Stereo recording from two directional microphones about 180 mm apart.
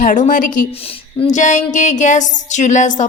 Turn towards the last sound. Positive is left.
turn(degrees=45)  # may be behind; listen again after turning